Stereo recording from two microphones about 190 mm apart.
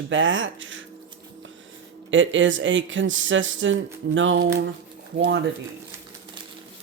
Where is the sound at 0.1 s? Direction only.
80° right.